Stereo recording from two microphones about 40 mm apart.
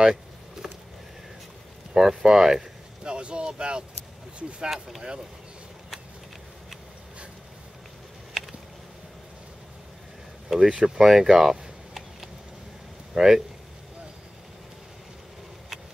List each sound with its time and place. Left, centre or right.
0.0 s a sound: centre
2.0 s speech: centre
3.0 s speech: right
10.6 s speech: right
11.0 s a sound: centre
13.1 s speech: centre